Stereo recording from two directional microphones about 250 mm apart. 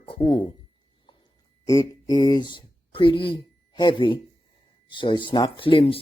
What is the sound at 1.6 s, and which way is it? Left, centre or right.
Speech, centre.